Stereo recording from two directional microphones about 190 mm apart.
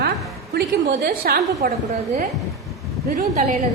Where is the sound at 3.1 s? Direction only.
45° right (ahead or behind).